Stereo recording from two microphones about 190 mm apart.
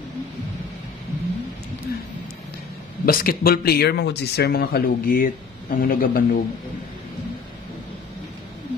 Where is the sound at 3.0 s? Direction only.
50° left (ahead or behind).